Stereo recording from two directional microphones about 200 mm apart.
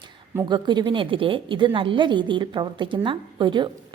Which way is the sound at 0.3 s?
20° right (ahead or behind).